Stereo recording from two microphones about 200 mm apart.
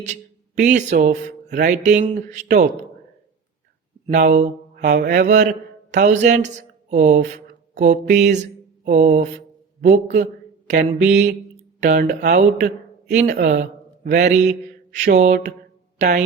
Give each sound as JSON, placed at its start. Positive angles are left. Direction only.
{"t": 0.0, "sound": "speech", "side_deg": -35}
{"t": 1.5, "sound": "mantra", "side_deg": -40}
{"t": 4.1, "sound": "mantra", "side_deg": -40}
{"t": 11.8, "sound": "speech", "side_deg": -40}
{"t": 13.1, "sound": "speech", "side_deg": -35}
{"t": 13.4, "sound": "mantra", "side_deg": -40}